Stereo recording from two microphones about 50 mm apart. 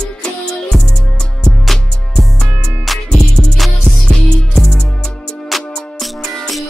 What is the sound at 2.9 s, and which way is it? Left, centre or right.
Music, centre.